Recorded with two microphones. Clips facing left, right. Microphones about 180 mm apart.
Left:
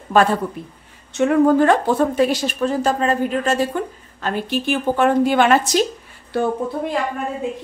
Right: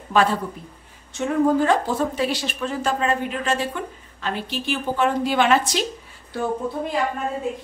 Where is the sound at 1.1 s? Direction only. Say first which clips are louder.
Left 5 dB; 65° left (ahead or behind); by 5.6 s 50° left (ahead or behind).